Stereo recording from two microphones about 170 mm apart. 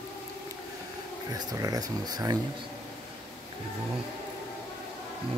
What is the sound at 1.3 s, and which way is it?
Speech, 20° right (ahead or behind).